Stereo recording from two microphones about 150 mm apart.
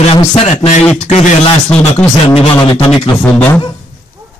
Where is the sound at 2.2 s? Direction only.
40° left (ahead or behind).